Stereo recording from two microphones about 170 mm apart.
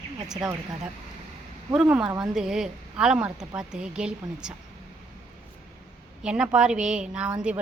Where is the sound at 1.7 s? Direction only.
5° right (ahead or behind).